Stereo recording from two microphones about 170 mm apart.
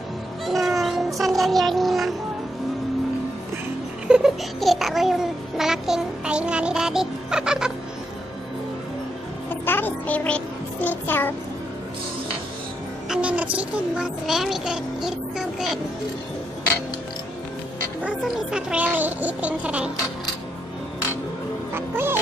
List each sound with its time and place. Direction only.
0.5 s music: centre (ahead or behind)
4.1 s a sound: centre (ahead or behind)
5.6 s music: 5° right (ahead or behind)
9.7 s a child's voice: 10° left (ahead or behind)
13.1 s a child's voice: 5° right (ahead or behind)
18.0 s a child's voice: 5° right (ahead or behind)
21.7 s music: 15° right (ahead or behind)